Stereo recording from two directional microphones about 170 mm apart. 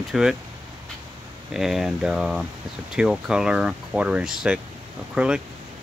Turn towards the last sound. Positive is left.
turn(degrees=-5)  # may be behind; listen again after turning